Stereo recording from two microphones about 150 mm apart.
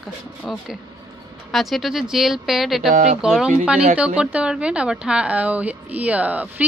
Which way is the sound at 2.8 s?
70° right (ahead or behind).